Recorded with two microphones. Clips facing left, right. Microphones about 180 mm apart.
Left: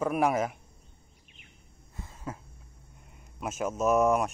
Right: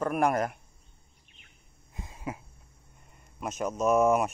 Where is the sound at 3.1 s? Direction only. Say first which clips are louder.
Even; 5° left (ahead or behind).